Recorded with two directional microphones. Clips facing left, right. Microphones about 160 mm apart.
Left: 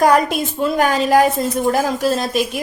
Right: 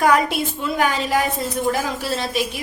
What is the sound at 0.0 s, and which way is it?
A woman's voice, 40° left (ahead or behind).